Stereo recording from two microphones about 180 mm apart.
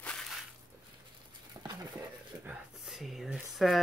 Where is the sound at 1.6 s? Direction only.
25° right (ahead or behind).